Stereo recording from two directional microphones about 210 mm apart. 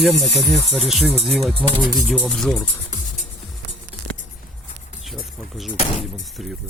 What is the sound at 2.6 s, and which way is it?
Music, 35° left (ahead or behind).